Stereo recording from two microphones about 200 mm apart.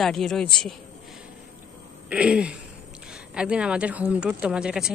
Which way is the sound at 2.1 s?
5° right (ahead or behind).